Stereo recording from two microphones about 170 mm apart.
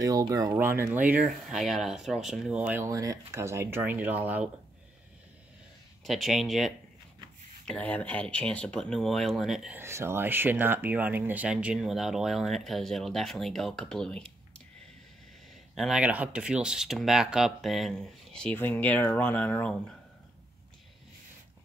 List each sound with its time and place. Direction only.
0.0 s speech: 20° right (ahead or behind)
6.0 s speech: centre (ahead or behind)
9.8 s speech: 15° right (ahead or behind); by 14.3 s 5° left (ahead or behind)
15.7 s speech: centre (ahead or behind)